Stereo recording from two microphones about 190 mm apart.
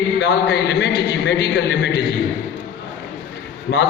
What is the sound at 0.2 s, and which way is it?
A man's voice, 65° left (ahead or behind).